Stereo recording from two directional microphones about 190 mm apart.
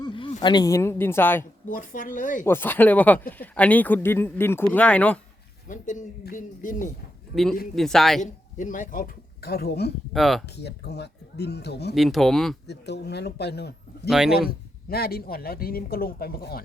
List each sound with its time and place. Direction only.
0.0 s speech: 25° left (ahead or behind); by 1.5 s 10° left (ahead or behind)
1.7 s speech: 45° left (ahead or behind)
2.4 s speech: 10° left (ahead or behind)
5.6 s speech: 40° left (ahead or behind)
7.3 s speech: centre (ahead or behind)
8.2 s speech: 40° left (ahead or behind)
10.1 s speech: centre (ahead or behind)
10.6 s speech: 60° left (ahead or behind)
11.9 s speech: centre (ahead or behind)
12.6 s speech: 60° left (ahead or behind)
14.1 s speech: 5° right (ahead or behind)
14.8 s speech: 55° left (ahead or behind)